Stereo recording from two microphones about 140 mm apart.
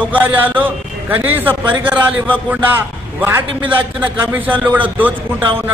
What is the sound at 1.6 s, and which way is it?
Speech, 35° right (ahead or behind).